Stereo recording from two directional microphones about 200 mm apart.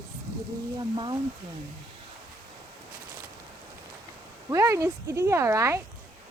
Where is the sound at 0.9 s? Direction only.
25° right (ahead or behind).